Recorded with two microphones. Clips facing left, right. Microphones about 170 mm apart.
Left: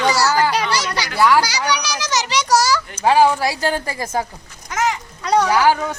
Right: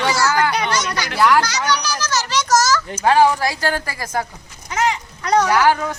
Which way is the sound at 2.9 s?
10° left (ahead or behind).